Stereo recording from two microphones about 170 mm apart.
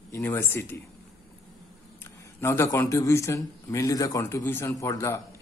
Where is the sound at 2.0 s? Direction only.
15° left (ahead or behind).